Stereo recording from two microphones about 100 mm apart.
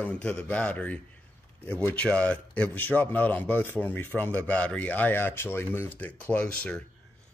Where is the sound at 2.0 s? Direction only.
15° left (ahead or behind).